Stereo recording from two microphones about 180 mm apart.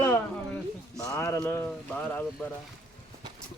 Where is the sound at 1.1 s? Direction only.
15° left (ahead or behind).